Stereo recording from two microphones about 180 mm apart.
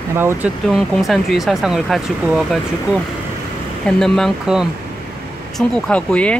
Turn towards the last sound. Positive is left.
turn(degrees=5)  # may be behind; listen again after turning